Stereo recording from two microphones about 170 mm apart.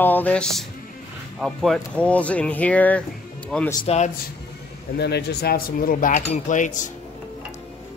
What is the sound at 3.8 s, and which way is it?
Speech, 40° left (ahead or behind).